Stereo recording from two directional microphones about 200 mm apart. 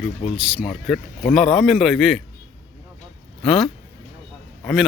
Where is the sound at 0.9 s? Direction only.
Centre (ahead or behind).